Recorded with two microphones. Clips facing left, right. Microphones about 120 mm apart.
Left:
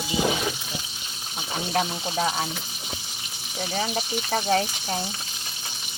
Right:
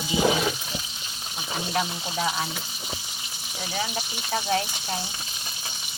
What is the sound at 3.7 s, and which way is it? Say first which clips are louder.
Speech: left 4 dB; 45° left (ahead or behind).